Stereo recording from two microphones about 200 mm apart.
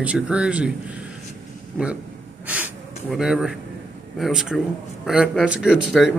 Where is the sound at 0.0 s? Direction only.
5° right (ahead or behind).